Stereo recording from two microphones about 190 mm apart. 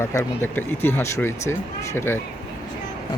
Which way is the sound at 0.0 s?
15° left (ahead or behind).